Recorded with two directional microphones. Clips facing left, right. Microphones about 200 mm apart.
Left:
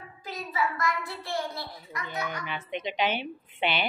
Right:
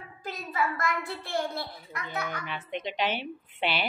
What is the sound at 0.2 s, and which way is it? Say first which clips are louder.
A child's voice: even; 55° right (ahead or behind).